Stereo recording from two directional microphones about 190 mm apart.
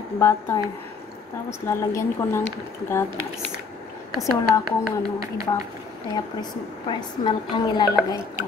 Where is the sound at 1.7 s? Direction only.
15° left (ahead or behind).